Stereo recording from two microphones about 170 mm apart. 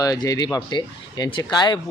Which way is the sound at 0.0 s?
20° left (ahead or behind).